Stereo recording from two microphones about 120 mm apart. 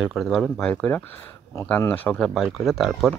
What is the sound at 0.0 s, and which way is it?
Speech, centre (ahead or behind).